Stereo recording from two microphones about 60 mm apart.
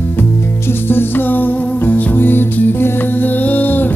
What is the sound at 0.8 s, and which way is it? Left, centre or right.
Music, left.